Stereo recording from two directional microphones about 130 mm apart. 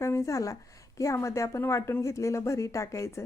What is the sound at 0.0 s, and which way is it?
Speech, 20° left (ahead or behind).